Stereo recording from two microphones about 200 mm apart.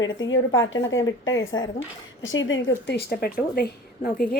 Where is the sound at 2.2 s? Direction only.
70° left (ahead or behind).